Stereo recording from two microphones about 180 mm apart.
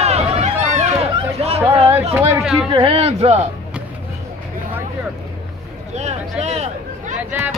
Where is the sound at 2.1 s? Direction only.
5° right (ahead or behind).